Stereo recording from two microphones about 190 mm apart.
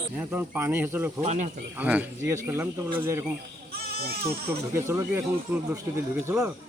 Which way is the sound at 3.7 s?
55° right (ahead or behind).